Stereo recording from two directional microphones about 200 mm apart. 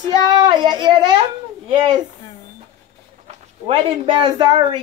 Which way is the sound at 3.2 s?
30° right (ahead or behind).